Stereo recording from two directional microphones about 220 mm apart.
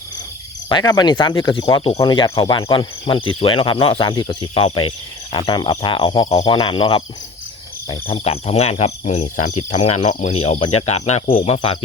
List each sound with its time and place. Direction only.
0.7 s speech: 20° left (ahead or behind)
8.0 s speech: 30° left (ahead or behind)